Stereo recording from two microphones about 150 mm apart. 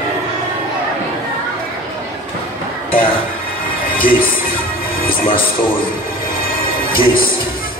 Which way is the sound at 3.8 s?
70° left (ahead or behind).